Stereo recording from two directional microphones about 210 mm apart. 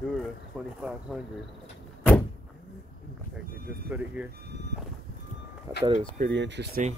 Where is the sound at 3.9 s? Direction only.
10° right (ahead or behind).